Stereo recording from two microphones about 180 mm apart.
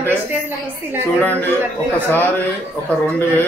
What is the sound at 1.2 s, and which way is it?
Speech, 10° left (ahead or behind).